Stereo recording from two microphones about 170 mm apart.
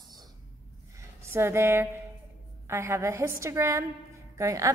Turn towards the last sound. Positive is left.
turn(degrees=-20)  # may be behind; listen again after turning